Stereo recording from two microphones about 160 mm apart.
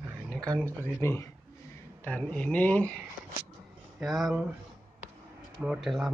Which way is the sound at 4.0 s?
Centre (ahead or behind).